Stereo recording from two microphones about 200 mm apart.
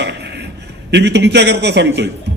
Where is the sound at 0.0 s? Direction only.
60° right (ahead or behind).